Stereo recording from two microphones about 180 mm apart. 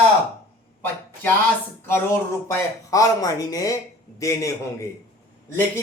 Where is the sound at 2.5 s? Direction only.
15° left (ahead or behind).